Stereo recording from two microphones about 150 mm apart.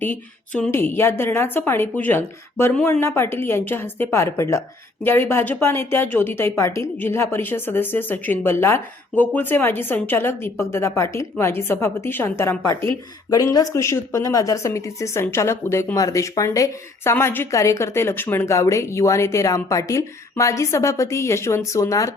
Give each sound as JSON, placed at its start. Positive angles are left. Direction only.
{"t": 0.0, "sound": "a woman's voice", "side_deg": 10}